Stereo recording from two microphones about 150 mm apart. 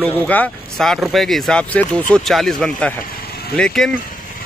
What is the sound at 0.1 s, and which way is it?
Speech, 10° left (ahead or behind).